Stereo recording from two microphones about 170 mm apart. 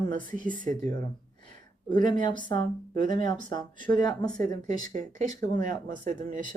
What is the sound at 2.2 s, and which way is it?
Speech, 25° left (ahead or behind).